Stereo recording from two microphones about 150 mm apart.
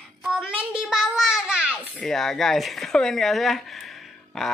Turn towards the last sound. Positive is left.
turn(degrees=0)  # may be behind; listen again after turning